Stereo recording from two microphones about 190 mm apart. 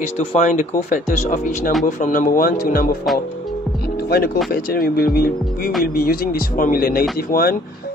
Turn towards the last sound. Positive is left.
turn(degrees=50)  # may be behind; listen again after turning